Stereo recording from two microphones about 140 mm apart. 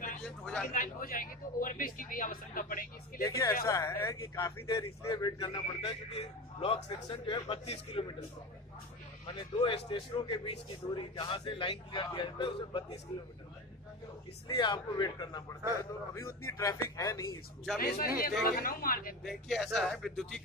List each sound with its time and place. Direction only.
0.2 s speech: 5° left (ahead or behind)
0.7 s speech: 85° left
3.3 s speech: 25° left (ahead or behind)
5.8 s speech: 45° left (ahead or behind)
7.1 s a man's voice: 35° left (ahead or behind)
9.2 s a man's voice: 35° left (ahead or behind)
14.6 s a man's voice: 30° left (ahead or behind)
17.7 s speech: 90° left
19.2 s speech: centre (ahead or behind)